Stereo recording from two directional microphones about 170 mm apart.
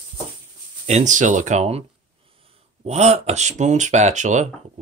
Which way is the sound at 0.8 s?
45° right (ahead or behind).